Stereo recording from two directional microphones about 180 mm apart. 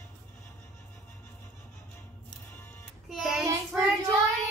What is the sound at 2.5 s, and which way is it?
Music, 10° left (ahead or behind).